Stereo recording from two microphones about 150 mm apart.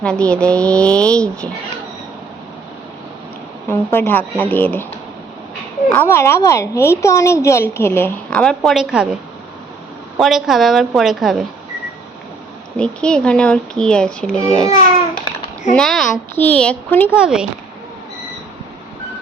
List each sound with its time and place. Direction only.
0.0 s a woman's voice: 5° left (ahead or behind)
3.7 s a woman's voice: 15° left (ahead or behind)
5.9 s a woman's voice: 15° left (ahead or behind); by 9.0 s 5° right (ahead or behind)
10.2 s speech: centre (ahead or behind)
12.7 s speech: 5° left (ahead or behind)
15.7 s a woman's voice: 5° left (ahead or behind)
17.2 s speech: 5° right (ahead or behind)